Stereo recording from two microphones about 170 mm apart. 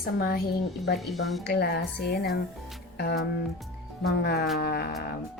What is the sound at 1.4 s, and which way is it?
Speech, 70° left (ahead or behind).